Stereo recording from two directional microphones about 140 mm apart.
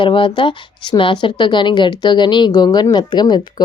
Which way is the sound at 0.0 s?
35° left (ahead or behind).